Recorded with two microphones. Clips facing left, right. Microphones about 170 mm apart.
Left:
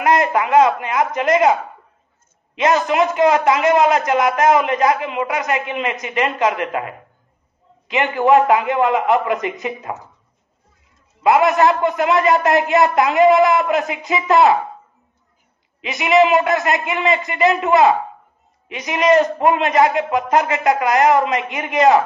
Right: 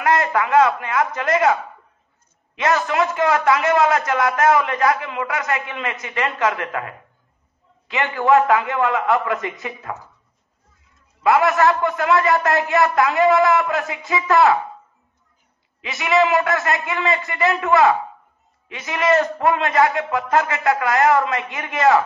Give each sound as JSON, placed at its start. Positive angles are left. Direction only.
{"t": 0.0, "sound": "a man's voice", "side_deg": 20}
{"t": 11.2, "sound": "a man's voice", "side_deg": 20}
{"t": 15.8, "sound": "a man's voice", "side_deg": 20}